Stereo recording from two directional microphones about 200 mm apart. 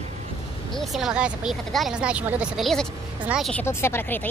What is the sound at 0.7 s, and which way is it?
Speech, centre (ahead or behind).